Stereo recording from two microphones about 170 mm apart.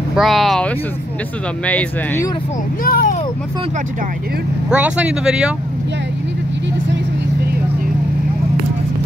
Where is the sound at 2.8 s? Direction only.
60° left (ahead or behind).